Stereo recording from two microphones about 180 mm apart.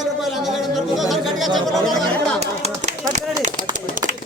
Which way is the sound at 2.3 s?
35° right (ahead or behind).